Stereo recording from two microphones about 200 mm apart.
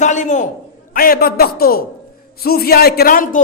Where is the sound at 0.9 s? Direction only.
45° left (ahead or behind).